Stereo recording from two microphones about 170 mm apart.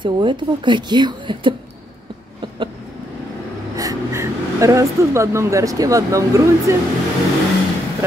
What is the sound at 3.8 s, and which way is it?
Speech, 20° right (ahead or behind).